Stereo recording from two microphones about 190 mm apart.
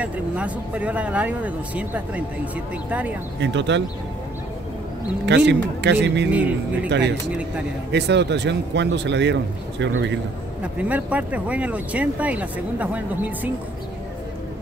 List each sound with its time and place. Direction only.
0.0 s speech: 5° right (ahead or behind)
3.3 s speech: 70° right (ahead or behind)
5.5 s speech: 65° right (ahead or behind)
6.3 s speech: 5° right (ahead or behind)
6.9 s speech: 65° right (ahead or behind)
10.6 s speech: 5° right (ahead or behind)